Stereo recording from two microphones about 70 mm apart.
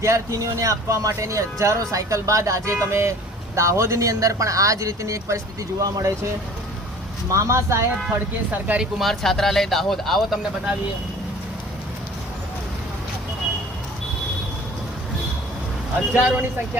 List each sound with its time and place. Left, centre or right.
0.0 s speech: right
7.3 s speech: right
8.8 s speech: centre
16.1 s speech: right